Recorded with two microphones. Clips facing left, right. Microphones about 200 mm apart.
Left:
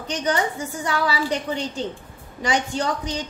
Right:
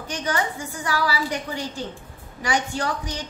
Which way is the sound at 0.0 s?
20° left (ahead or behind).